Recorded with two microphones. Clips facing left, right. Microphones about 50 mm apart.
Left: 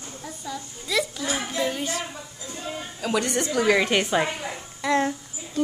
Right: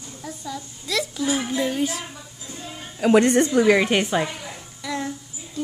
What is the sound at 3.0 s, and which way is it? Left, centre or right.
Speech, right.